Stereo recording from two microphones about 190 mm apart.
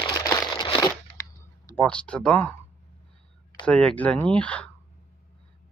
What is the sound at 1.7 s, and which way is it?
Speech, 5° left (ahead or behind).